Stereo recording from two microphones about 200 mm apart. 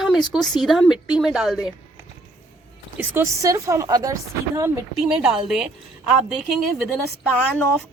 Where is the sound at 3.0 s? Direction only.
15° right (ahead or behind).